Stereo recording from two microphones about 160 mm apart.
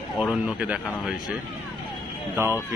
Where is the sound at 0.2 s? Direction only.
5° right (ahead or behind).